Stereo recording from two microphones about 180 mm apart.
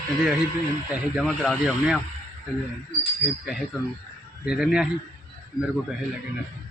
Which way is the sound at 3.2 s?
Centre (ahead or behind).